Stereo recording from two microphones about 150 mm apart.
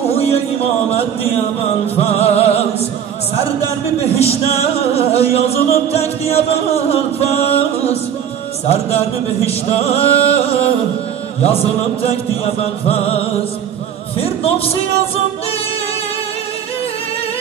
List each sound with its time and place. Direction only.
0.1 s a sound: 40° left (ahead or behind)
2.0 s music: 45° left (ahead or behind)
4.0 s music: 40° left (ahead or behind)